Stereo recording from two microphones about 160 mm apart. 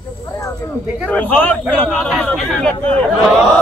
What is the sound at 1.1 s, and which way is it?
Speech, 10° left (ahead or behind).